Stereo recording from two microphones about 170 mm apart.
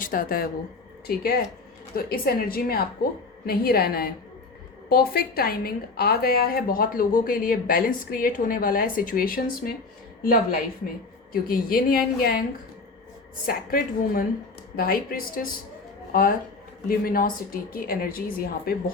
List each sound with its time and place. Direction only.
0.0 s a woman's voice: 55° left (ahead or behind)
13.4 s a woman's voice: 60° left (ahead or behind)